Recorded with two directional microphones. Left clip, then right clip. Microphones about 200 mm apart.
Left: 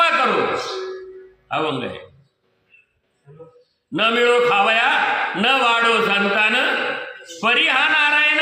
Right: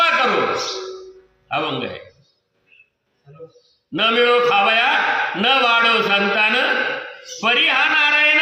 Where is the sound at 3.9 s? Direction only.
5° left (ahead or behind).